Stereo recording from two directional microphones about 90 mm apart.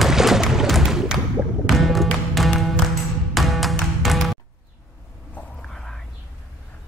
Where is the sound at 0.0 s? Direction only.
5° right (ahead or behind).